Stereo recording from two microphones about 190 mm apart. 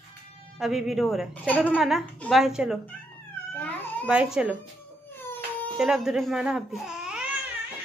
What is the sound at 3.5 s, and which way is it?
Cat, 10° left (ahead or behind).